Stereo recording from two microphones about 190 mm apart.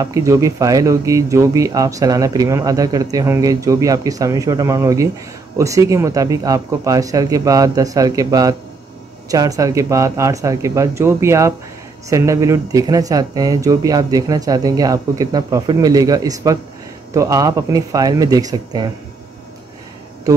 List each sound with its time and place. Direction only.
0.0 s speech: 15° right (ahead or behind)